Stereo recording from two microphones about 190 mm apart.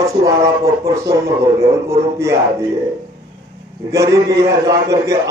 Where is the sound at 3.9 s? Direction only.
15° right (ahead or behind).